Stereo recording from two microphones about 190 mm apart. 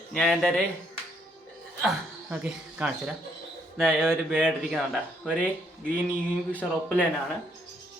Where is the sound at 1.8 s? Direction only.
Centre (ahead or behind).